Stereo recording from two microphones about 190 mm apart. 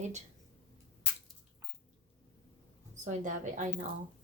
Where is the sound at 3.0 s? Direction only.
40° right (ahead or behind).